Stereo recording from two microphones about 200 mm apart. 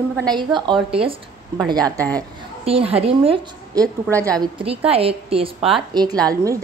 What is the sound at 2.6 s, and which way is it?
A woman's voice, 30° right (ahead or behind).